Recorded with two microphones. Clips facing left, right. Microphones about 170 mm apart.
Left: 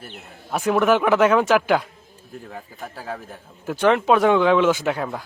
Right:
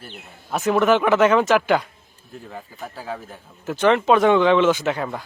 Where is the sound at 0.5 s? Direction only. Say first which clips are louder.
Right 1 dB; 5° left (ahead or behind).